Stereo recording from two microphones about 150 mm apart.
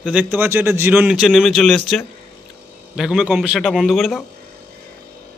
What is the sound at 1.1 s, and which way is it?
Speech, centre (ahead or behind).